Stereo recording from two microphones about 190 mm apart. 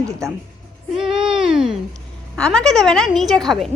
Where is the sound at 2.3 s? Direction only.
5° left (ahead or behind).